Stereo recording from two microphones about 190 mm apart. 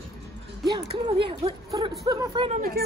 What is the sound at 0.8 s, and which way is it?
Speech, 30° right (ahead or behind).